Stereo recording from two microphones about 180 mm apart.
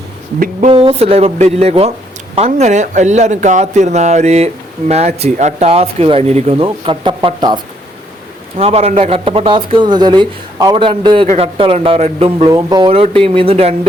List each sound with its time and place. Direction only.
0.3 s a sound: 50° right (ahead or behind)
0.7 s speech: 30° right (ahead or behind)
12.5 s speech: 20° right (ahead or behind)